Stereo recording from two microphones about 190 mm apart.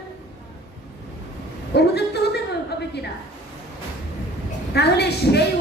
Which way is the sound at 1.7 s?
60° left (ahead or behind).